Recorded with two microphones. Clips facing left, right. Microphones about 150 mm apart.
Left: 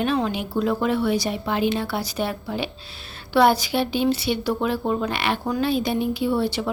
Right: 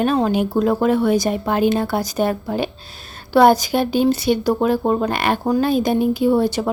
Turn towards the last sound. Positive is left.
turn(degrees=-45)  # may be behind; listen again after turning